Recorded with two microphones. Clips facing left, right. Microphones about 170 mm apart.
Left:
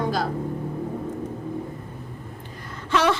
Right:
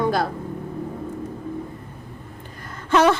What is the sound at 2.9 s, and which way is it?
Gasp, 50° right (ahead or behind).